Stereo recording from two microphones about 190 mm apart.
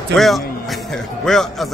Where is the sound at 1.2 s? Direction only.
Centre (ahead or behind).